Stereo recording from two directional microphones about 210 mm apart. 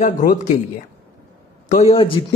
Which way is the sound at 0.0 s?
40° left (ahead or behind).